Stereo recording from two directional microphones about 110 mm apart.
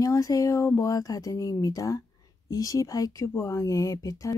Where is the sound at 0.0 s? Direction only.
30° left (ahead or behind).